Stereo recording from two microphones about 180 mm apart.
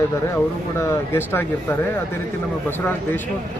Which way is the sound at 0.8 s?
15° left (ahead or behind).